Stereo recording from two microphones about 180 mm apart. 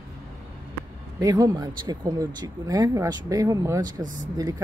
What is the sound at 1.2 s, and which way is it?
Speech, 20° right (ahead or behind).